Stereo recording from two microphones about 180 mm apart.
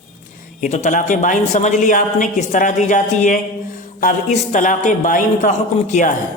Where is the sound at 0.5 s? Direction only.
40° left (ahead or behind).